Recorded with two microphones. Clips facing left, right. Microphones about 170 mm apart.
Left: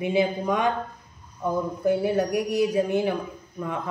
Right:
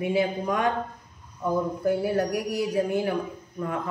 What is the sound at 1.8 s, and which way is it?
Speech, centre (ahead or behind).